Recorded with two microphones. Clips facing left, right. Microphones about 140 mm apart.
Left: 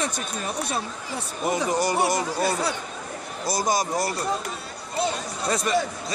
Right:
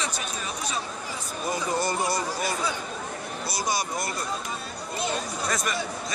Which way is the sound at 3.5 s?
45° left (ahead or behind).